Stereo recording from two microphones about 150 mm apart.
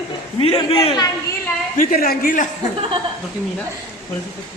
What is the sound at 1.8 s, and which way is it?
Speech, 75° left (ahead or behind).